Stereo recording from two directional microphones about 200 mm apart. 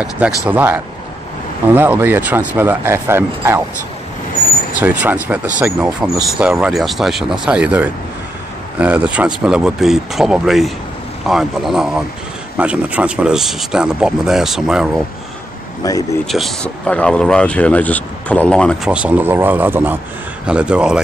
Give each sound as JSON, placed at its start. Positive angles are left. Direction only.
{"t": 0.5, "sound": "speech", "side_deg": -10}
{"t": 4.7, "sound": "speech", "side_deg": -10}
{"t": 15.8, "sound": "speech", "side_deg": 20}
{"t": 16.3, "sound": "speech", "side_deg": 0}
{"t": 18.9, "sound": "speech", "side_deg": -10}